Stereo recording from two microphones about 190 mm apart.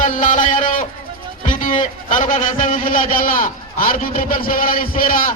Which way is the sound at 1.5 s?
45° left (ahead or behind).